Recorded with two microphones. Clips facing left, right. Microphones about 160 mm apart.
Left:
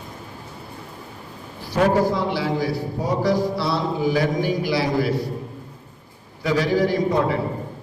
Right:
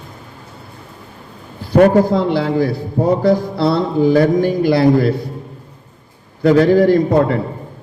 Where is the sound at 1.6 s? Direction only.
55° right (ahead or behind).